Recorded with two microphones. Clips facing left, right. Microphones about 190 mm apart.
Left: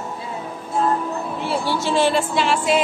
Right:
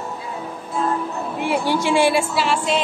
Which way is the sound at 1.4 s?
15° right (ahead or behind).